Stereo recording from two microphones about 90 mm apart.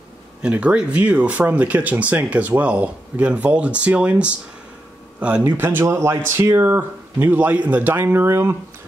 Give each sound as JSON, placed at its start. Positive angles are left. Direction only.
{"t": 0.4, "sound": "speech", "side_deg": -15}
{"t": 5.5, "sound": "speech", "side_deg": -25}